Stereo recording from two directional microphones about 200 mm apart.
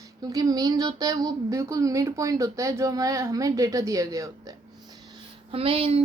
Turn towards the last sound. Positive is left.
turn(degrees=-30)  # may be behind; listen again after turning